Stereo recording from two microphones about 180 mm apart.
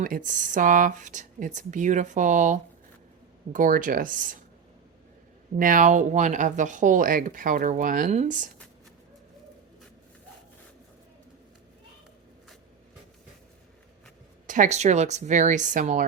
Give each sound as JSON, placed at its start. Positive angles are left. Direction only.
{"t": 0.0, "sound": "speech", "side_deg": -50}
{"t": 5.5, "sound": "speech", "side_deg": -50}
{"t": 14.4, "sound": "speech", "side_deg": -45}